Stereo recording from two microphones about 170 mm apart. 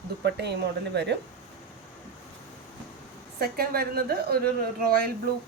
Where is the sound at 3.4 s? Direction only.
60° right (ahead or behind).